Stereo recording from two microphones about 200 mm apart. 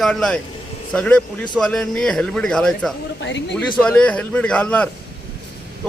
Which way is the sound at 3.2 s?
65° left (ahead or behind).